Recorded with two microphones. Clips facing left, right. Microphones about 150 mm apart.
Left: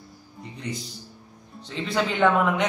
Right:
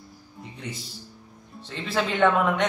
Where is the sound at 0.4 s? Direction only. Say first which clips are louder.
Left 3 dB; centre (ahead or behind).